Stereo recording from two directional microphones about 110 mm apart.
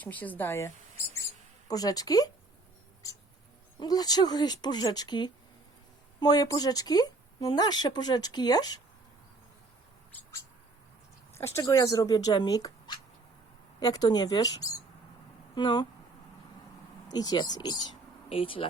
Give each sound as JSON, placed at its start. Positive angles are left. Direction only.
{"t": 0.0, "sound": "speech", "side_deg": 15}
{"t": 1.6, "sound": "speech", "side_deg": 35}
{"t": 3.8, "sound": "speech", "side_deg": 35}
{"t": 11.3, "sound": "speech", "side_deg": 25}
{"t": 17.1, "sound": "speech", "side_deg": 35}
{"t": 18.3, "sound": "speech", "side_deg": 55}